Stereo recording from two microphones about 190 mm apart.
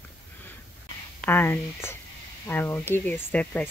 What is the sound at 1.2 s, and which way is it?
Speech, 10° left (ahead or behind).